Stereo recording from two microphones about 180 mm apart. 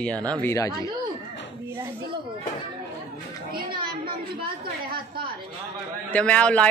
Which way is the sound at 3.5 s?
55° right (ahead or behind).